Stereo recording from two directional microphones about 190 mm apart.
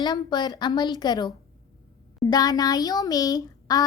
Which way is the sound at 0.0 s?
20° left (ahead or behind).